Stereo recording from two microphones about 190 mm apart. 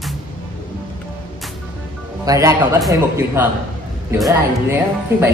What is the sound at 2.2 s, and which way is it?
Speech, 20° right (ahead or behind).